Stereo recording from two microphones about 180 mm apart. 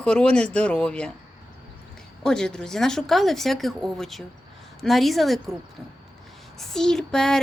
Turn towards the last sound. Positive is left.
turn(degrees=5)  # may be behind; listen again after turning